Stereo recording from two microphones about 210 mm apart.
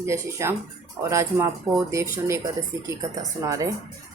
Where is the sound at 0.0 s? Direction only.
15° right (ahead or behind).